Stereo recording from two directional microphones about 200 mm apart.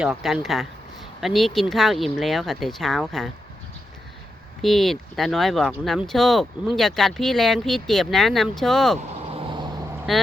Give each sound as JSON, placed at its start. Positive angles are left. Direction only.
{"t": 0.0, "sound": "speech", "side_deg": 0}
{"t": 4.6, "sound": "speech", "side_deg": 0}
{"t": 9.0, "sound": "vehicle", "side_deg": -30}
{"t": 10.1, "sound": "speech", "side_deg": 0}